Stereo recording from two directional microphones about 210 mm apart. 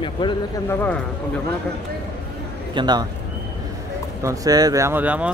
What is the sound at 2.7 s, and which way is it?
Speech, 20° right (ahead or behind).